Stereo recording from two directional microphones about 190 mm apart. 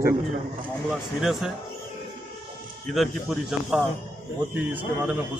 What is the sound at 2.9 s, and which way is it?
Speech, centre (ahead or behind).